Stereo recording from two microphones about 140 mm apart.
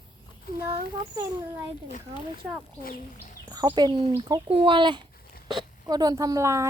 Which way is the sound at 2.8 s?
90° left.